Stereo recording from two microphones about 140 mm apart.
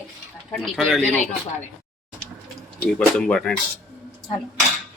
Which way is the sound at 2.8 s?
5° left (ahead or behind).